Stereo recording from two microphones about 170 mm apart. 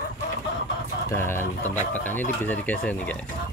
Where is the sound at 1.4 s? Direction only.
45° left (ahead or behind).